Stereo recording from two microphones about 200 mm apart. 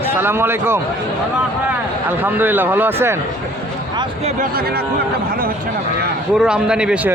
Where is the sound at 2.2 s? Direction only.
10° right (ahead or behind).